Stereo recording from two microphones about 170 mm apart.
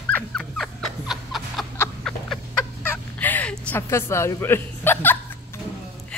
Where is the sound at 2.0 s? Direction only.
10° left (ahead or behind).